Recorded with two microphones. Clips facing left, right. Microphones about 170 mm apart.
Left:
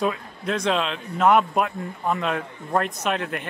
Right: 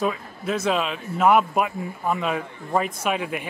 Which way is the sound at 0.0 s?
Centre (ahead or behind).